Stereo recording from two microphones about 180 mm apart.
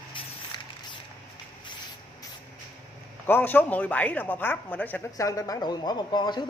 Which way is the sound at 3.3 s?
10° left (ahead or behind).